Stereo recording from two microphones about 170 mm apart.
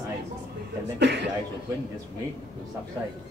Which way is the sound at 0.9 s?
85° right.